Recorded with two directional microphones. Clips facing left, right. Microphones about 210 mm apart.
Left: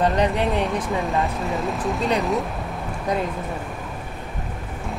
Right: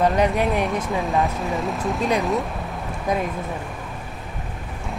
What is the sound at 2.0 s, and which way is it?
Speech, 15° right (ahead or behind).